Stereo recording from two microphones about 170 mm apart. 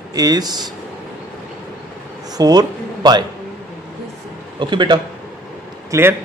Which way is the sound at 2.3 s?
25° right (ahead or behind).